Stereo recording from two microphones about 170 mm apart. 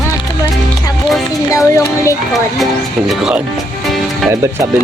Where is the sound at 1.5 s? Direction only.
20° left (ahead or behind).